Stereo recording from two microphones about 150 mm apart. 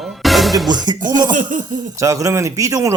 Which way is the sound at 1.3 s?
60° right (ahead or behind).